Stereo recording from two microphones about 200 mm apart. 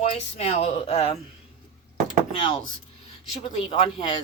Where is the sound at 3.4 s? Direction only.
25° left (ahead or behind).